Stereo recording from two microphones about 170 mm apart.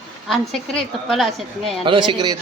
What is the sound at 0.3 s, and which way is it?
A woman's voice, centre (ahead or behind).